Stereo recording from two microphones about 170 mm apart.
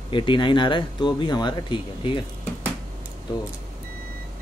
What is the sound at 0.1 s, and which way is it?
Speech, 30° left (ahead or behind).